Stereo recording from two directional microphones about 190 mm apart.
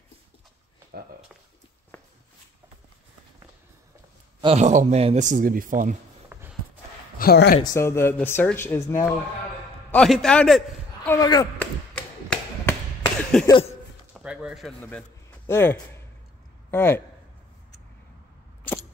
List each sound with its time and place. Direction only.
4.4 s a man's voice: 35° right (ahead or behind)
6.3 s a sound: 10° right (ahead or behind)
7.2 s speech: 55° left (ahead or behind)
7.6 s speech: 15° left (ahead or behind)
9.8 s a man's voice: 5° left (ahead or behind)
11.1 s speech: 20° left (ahead or behind)
11.5 s a sound: 5° left (ahead or behind)
13.5 s speech: 30° left (ahead or behind)
14.1 s a man's voice: 5° right (ahead or behind); by 17.0 s 10° left (ahead or behind)